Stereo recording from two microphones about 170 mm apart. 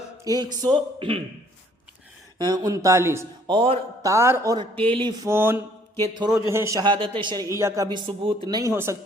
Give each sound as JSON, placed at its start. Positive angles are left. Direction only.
{"t": 0.3, "sound": "a woman's voice", "side_deg": -20}
{"t": 2.4, "sound": "a woman's voice", "side_deg": -20}
{"t": 3.4, "sound": "a man's voice", "side_deg": -30}
{"t": 4.0, "sound": "speech", "side_deg": -15}
{"t": 4.8, "sound": "a woman's voice", "side_deg": -30}
{"t": 5.3, "sound": "a woman's voice", "side_deg": -15}